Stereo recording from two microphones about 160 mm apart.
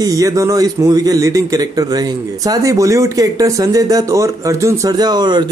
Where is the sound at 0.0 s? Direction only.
20° right (ahead or behind).